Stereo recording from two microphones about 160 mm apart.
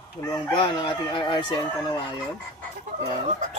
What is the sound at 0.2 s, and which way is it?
Chicken, 25° left (ahead or behind).